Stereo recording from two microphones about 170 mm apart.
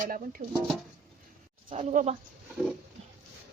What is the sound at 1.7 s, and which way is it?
Speech, 45° right (ahead or behind).